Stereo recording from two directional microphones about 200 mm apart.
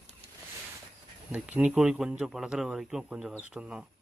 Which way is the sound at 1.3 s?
5° right (ahead or behind).